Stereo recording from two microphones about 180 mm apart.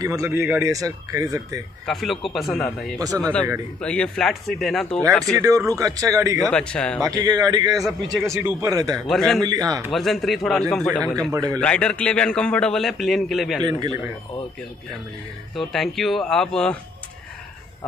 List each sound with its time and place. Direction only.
0.0 s speech: 20° right (ahead or behind)
1.9 s a man's voice: centre (ahead or behind)
5.7 s speech: 20° right (ahead or behind)
6.5 s a man's voice: 5° left (ahead or behind)
7.2 s speech: 20° right (ahead or behind)
9.0 s a man's voice: centre (ahead or behind)
9.4 s speech: 20° right (ahead or behind)
9.9 s a man's voice: centre (ahead or behind)
11.3 s speech: 20° right (ahead or behind)
11.6 s a man's voice: 5° left (ahead or behind)
13.7 s speech: 25° right (ahead or behind)
15.5 s a man's voice: centre (ahead or behind)